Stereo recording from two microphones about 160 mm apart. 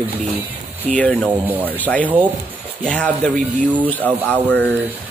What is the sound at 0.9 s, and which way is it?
Speech, 10° left (ahead or behind).